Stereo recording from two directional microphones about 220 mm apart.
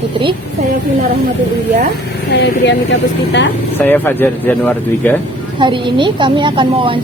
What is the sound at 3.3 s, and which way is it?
Speech, 50° left (ahead or behind).